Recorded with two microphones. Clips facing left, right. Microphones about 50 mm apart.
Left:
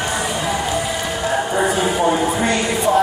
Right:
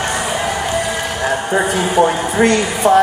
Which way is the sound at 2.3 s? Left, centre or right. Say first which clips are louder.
Right 4 dB; right.